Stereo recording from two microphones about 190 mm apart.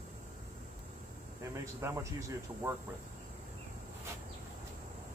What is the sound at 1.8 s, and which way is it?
Speech, 15° right (ahead or behind).